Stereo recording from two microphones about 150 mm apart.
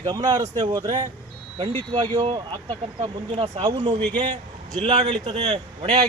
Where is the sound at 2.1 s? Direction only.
35° right (ahead or behind).